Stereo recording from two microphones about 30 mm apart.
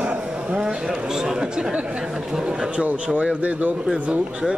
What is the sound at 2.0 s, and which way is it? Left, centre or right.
Speech, right.